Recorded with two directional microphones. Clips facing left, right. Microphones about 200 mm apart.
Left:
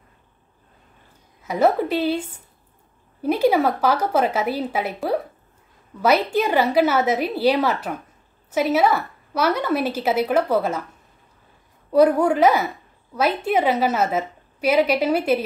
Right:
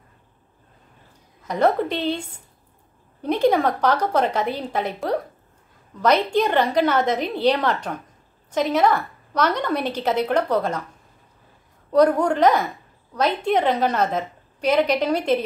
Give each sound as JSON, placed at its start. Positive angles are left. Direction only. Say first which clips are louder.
{"t": 1.4, "sound": "a woman's voice", "louder": "left 1 dB", "side_deg": 5}
{"t": 11.9, "sound": "a woman's voice", "louder": "left 1 dB", "side_deg": 5}